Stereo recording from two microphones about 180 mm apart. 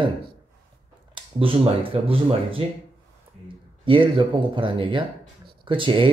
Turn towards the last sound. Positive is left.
turn(degrees=-30)  # may be behind; listen again after turning